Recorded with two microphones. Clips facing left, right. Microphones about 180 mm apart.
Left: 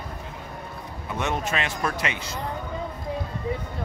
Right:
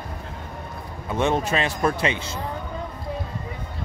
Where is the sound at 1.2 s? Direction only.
30° right (ahead or behind).